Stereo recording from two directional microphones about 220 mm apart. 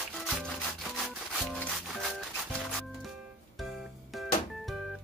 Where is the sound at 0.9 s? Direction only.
Centre (ahead or behind).